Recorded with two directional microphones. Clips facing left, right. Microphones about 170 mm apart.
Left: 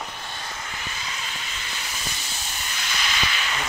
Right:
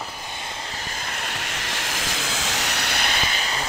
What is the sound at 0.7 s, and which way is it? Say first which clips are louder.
Vehicle: right 2 dB; 45° right (ahead or behind).